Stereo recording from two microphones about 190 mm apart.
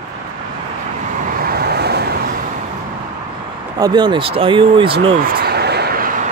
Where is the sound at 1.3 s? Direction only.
50° right (ahead or behind).